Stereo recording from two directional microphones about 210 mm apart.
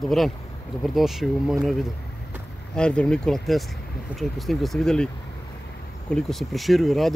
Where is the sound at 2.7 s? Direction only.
5° left (ahead or behind).